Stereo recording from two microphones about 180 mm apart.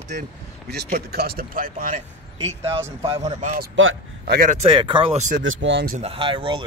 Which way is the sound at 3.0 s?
30° right (ahead or behind).